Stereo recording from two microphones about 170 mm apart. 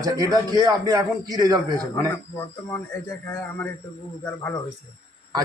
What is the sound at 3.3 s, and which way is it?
A man's voice, 15° left (ahead or behind).